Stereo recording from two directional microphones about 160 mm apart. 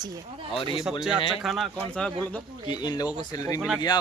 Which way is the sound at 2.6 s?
25° left (ahead or behind).